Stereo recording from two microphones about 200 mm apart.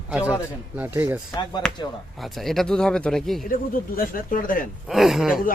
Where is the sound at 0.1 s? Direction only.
5° right (ahead or behind).